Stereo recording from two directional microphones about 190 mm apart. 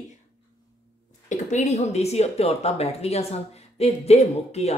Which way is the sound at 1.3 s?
40° left (ahead or behind).